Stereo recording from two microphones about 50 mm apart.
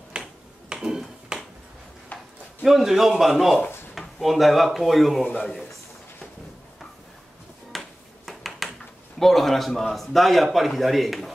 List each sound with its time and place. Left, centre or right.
0.1 s finger snapping: centre
0.7 s a sound: centre
2.6 s a man's voice: centre
7.7 s finger snapping: centre
8.3 s a sound: centre
9.2 s a man's voice: centre